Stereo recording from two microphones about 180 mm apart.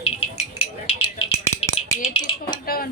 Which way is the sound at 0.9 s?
30° left (ahead or behind).